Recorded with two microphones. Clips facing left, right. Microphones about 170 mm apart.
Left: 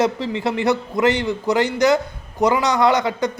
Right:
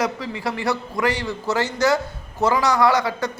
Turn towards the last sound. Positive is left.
turn(degrees=20)  # may be behind; listen again after turning